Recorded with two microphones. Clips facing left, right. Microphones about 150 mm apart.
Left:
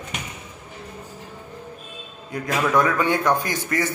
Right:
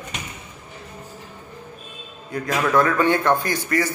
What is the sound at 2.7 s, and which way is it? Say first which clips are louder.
Speech: right 3 dB; 10° left (ahead or behind).